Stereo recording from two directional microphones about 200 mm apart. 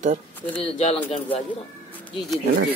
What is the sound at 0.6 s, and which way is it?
Speech, 30° left (ahead or behind).